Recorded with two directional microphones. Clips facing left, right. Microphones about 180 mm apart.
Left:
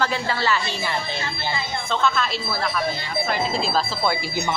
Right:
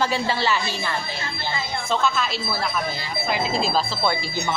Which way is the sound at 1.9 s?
10° right (ahead or behind).